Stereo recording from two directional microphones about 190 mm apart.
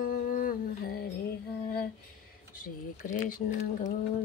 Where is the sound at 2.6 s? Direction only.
45° left (ahead or behind).